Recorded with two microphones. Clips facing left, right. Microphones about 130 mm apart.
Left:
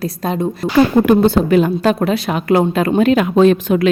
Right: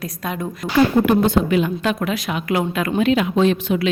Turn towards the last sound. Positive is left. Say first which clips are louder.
# left 6 dB
turn(degrees=45)  # may be behind; listen again after turning